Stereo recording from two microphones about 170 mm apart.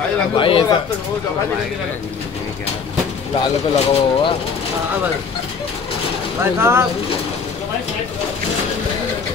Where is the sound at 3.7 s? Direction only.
35° left (ahead or behind).